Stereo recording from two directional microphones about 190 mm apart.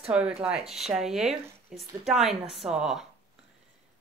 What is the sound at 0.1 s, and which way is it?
Speech, 5° right (ahead or behind).